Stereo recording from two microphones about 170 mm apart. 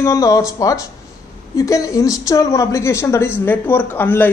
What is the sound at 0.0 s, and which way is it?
Speech, 20° left (ahead or behind).